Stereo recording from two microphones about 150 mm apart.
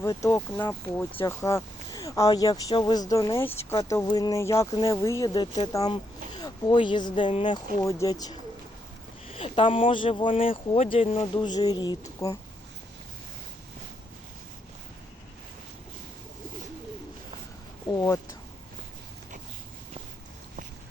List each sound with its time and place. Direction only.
0.0 s a man's voice: 20° left (ahead or behind)
9.2 s a man's voice: 40° left (ahead or behind)
17.8 s speech: 20° left (ahead or behind)